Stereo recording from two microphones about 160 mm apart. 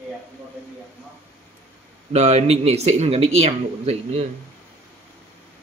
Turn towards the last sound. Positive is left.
turn(degrees=-40)  # may be behind; listen again after turning